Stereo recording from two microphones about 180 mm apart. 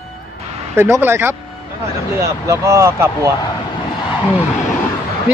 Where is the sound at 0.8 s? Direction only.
15° right (ahead or behind).